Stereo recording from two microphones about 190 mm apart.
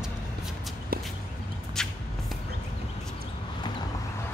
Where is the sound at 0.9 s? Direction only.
50° right (ahead or behind).